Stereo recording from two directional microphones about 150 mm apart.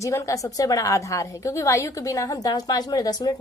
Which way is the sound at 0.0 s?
20° left (ahead or behind).